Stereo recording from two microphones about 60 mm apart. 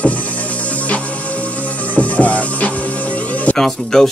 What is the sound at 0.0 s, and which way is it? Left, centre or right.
Music, left.